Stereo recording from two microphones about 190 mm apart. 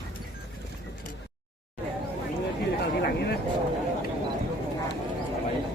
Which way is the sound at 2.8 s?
60° left (ahead or behind).